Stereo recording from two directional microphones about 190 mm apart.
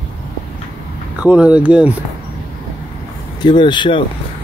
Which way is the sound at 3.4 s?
25° left (ahead or behind).